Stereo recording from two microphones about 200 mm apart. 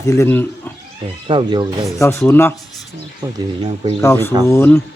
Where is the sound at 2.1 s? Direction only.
10° left (ahead or behind).